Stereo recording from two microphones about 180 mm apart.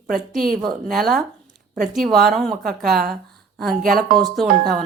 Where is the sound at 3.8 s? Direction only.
55° right (ahead or behind).